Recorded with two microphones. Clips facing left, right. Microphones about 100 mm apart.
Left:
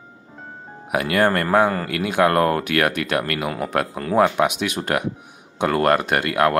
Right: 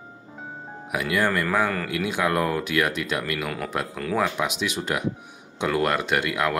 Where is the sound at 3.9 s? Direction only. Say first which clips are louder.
Left 4 dB; 40° left (ahead or behind).